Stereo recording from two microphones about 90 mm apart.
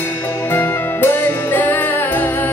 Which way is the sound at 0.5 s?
20° left (ahead or behind).